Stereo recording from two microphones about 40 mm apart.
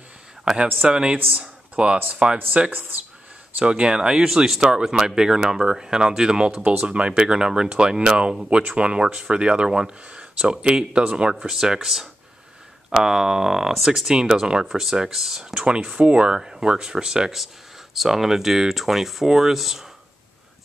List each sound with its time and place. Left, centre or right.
0.8 s speech: right
2.7 s speech: right
3.6 s speech: right
9.7 s speech: centre
11.4 s speech: centre
15.6 s speech: right
16.3 s speech: centre
17.9 s speech: centre